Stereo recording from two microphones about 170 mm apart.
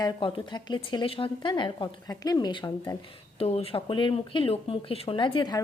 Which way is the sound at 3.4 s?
35° left (ahead or behind).